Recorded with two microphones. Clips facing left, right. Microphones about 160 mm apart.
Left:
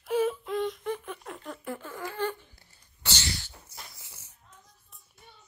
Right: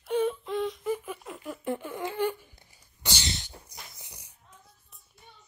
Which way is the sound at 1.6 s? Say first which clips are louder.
Right 7 dB; 20° right (ahead or behind).